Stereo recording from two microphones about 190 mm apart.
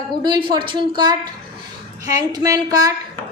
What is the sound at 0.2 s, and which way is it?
A woman's voice, 25° right (ahead or behind).